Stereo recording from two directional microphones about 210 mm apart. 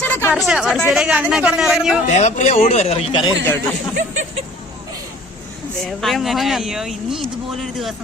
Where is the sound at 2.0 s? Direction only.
35° left (ahead or behind).